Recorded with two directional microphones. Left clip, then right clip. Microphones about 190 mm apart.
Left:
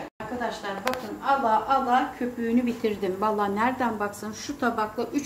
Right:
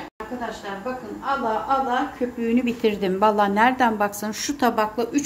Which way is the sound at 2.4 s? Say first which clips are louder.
Right 4 dB; 40° right (ahead or behind).